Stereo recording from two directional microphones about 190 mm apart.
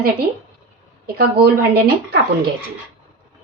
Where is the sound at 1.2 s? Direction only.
55° right (ahead or behind).